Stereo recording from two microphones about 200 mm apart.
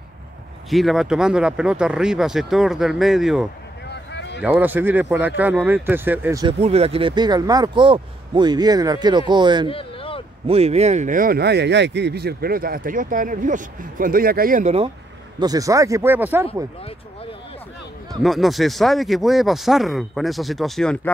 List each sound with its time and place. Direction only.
0.7 s speech: centre (ahead or behind)
3.9 s a sound: 60° left (ahead or behind)
4.4 s speech: 5° right (ahead or behind)
6.4 s speech: 30° right (ahead or behind)
9.7 s a sound: 25° left (ahead or behind)
10.4 s speech: 30° right (ahead or behind)
15.3 s speech: 20° right (ahead or behind)
18.2 s speech: centre (ahead or behind)